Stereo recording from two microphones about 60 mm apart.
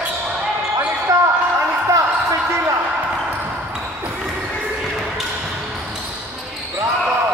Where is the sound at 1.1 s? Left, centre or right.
Right.